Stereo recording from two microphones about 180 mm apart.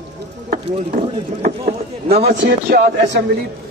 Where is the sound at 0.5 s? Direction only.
55° right (ahead or behind).